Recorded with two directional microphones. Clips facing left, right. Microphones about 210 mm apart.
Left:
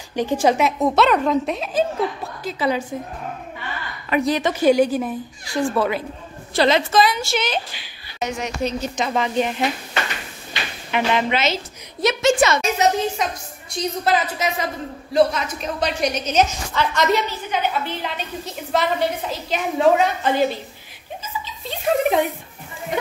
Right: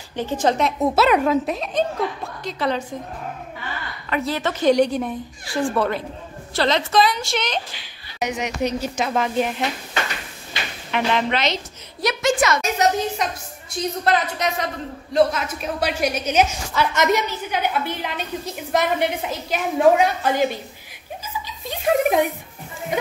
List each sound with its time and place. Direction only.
0.1 s a woman's voice: 15° left (ahead or behind)
4.1 s a woman's voice: 15° left (ahead or behind)
6.9 s a woman's voice: 5° left (ahead or behind)
8.2 s a woman's voice: 15° right (ahead or behind)
10.9 s a woman's voice: 5° left (ahead or behind)
12.0 s a woman's voice: 25° left (ahead or behind)
12.7 s a woman's voice: centre (ahead or behind)
21.6 s speech: 10° right (ahead or behind)